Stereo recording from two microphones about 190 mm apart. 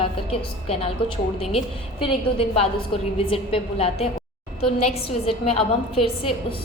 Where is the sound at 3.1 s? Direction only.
30° left (ahead or behind).